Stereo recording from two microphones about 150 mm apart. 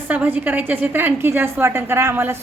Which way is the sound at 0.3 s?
10° right (ahead or behind).